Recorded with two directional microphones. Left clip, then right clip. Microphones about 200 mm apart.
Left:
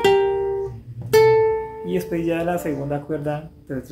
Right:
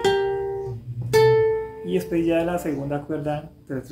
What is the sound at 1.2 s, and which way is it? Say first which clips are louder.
Music: left 2 dB; 30° left (ahead or behind).